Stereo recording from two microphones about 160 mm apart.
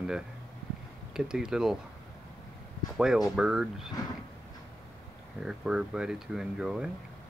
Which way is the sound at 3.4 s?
5° right (ahead or behind).